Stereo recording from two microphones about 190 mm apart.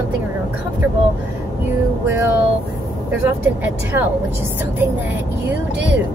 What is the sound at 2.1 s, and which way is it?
Speech, 10° right (ahead or behind).